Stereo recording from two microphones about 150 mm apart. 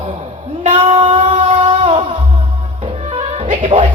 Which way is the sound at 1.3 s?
40° right (ahead or behind).